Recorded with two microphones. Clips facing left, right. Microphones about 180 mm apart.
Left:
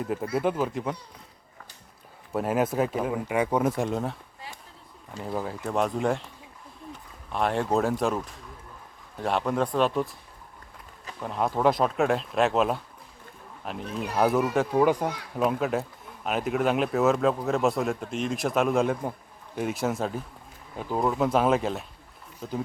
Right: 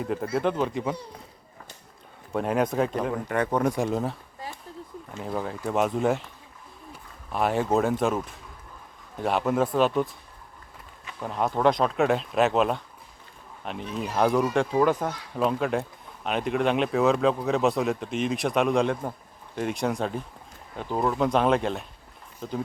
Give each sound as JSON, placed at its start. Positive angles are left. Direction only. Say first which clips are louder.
{"t": 0.0, "sound": "speech", "louder": "right 1 dB", "side_deg": 0}
{"t": 2.3, "sound": "speech", "louder": "right 1 dB", "side_deg": 5}
{"t": 5.2, "sound": "speech", "louder": "right 1 dB", "side_deg": 0}
{"t": 11.2, "sound": "speech", "louder": "right 1 dB", "side_deg": 0}